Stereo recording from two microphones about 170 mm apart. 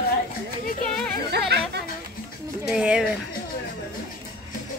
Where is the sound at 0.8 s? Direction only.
5° left (ahead or behind).